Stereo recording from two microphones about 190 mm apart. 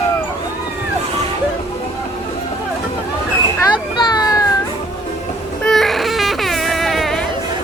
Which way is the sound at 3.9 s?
20° left (ahead or behind).